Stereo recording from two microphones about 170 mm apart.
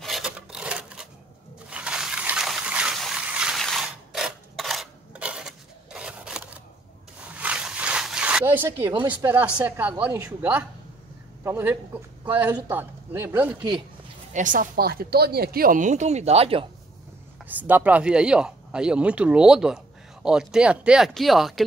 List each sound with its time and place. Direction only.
0.0 s filing: centre (ahead or behind)
1.7 s water: 5° right (ahead or behind)
5.9 s scissors: 5° right (ahead or behind)
7.3 s zipper: 5° right (ahead or behind)
8.9 s speech: 25° right (ahead or behind)
9.6 s speech: 10° right (ahead or behind)
13.6 s speech: 25° right (ahead or behind)
14.3 s speech: 50° right (ahead or behind)
17.5 s speech: 10° right (ahead or behind)